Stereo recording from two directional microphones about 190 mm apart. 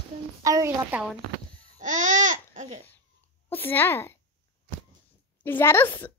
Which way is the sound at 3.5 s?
10° left (ahead or behind).